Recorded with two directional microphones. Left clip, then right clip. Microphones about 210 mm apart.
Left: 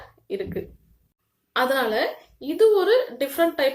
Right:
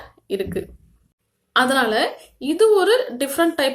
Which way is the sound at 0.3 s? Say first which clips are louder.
Right 5 dB; 35° right (ahead or behind).